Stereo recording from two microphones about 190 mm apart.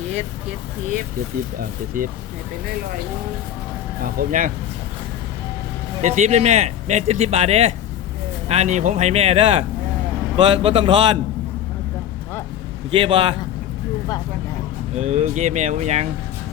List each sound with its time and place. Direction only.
2.0 s speech: 45° right (ahead or behind)
4.0 s speech: 45° right (ahead or behind)
6.0 s a man's voice: 40° right (ahead or behind)
12.9 s a man's voice: 25° right (ahead or behind)
14.9 s speech: 35° right (ahead or behind)